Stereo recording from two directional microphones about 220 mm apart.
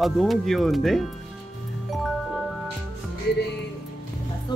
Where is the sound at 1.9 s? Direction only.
Centre (ahead or behind).